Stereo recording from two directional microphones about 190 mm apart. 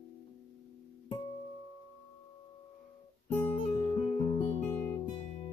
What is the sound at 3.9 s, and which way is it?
Music, 30° left (ahead or behind).